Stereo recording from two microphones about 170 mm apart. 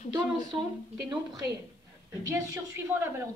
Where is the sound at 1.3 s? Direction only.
20° right (ahead or behind).